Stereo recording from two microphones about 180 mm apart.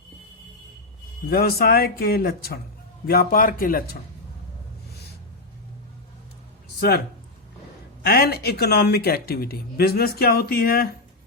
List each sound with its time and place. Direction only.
1.3 s speech: 60° left (ahead or behind)
6.7 s speech: 60° left (ahead or behind)
8.0 s speech: 60° left (ahead or behind)